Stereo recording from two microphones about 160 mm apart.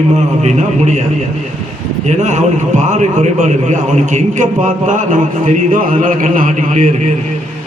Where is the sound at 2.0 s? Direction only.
50° right (ahead or behind).